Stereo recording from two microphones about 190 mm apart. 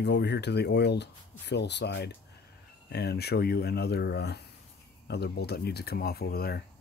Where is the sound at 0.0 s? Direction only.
60° left (ahead or behind).